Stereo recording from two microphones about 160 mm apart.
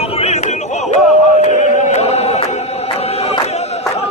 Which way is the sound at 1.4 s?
50° left (ahead or behind).